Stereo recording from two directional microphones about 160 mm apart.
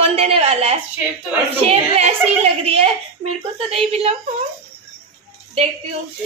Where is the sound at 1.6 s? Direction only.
40° right (ahead or behind).